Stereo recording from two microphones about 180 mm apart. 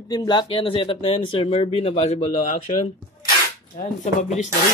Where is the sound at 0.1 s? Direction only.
25° left (ahead or behind).